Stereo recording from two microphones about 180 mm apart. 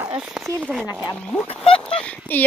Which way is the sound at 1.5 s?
30° left (ahead or behind).